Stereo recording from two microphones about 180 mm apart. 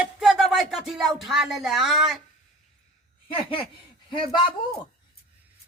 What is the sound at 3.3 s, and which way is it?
Speech, 30° left (ahead or behind).